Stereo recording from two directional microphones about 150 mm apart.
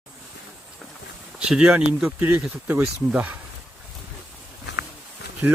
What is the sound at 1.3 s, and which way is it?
Speech, 5° right (ahead or behind).